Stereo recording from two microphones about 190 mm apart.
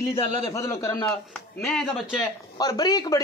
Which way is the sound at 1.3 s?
5° left (ahead or behind).